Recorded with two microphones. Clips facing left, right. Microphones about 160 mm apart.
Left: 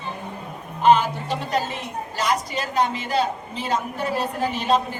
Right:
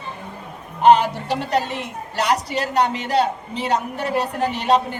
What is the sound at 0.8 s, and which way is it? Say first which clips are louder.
A woman's voice: right 3 dB; 70° right (ahead or behind).